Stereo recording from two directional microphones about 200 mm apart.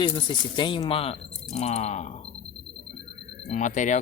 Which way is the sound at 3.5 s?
40° left (ahead or behind).